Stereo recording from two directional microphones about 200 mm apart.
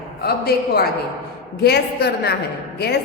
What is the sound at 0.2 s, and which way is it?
A woman's voice, 50° left (ahead or behind).